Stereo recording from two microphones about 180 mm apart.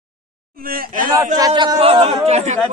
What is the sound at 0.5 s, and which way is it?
Speech, 55° right (ahead or behind).